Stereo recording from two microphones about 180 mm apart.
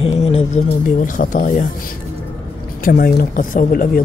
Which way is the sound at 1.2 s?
50° left (ahead or behind).